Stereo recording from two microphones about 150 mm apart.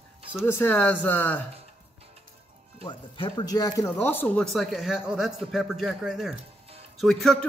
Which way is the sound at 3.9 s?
15° left (ahead or behind).